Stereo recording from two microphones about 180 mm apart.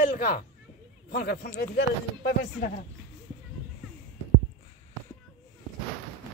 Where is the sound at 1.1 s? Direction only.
60° left (ahead or behind).